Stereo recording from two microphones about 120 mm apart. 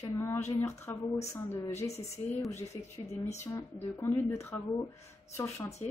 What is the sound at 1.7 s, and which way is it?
Speech, 65° left (ahead or behind).